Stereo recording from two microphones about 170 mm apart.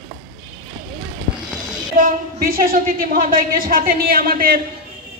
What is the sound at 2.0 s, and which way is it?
A woman's voice, 55° right (ahead or behind).